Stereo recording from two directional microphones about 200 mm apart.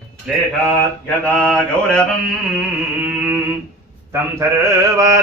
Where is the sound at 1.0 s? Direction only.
5° left (ahead or behind).